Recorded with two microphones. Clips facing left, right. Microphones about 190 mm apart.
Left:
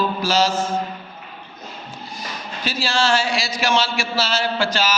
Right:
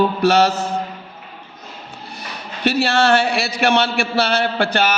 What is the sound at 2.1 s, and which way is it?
A man's voice, 65° right (ahead or behind).